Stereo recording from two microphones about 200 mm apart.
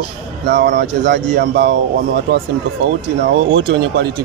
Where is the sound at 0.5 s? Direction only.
50° right (ahead or behind).